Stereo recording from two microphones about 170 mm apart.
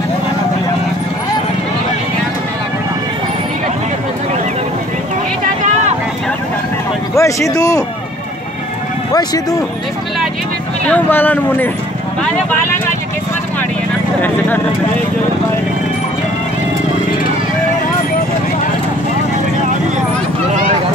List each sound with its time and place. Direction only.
7.2 s speech: 20° left (ahead or behind)
9.1 s speech: 20° left (ahead or behind)
10.9 s speech: 10° left (ahead or behind)